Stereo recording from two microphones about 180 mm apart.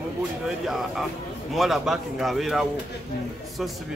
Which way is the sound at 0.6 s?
Centre (ahead or behind).